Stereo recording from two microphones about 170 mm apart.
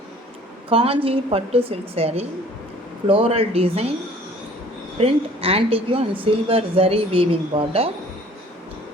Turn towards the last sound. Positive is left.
turn(degrees=-35)  # may be behind; listen again after turning